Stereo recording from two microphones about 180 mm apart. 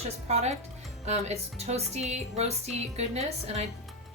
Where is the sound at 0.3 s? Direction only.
40° right (ahead or behind).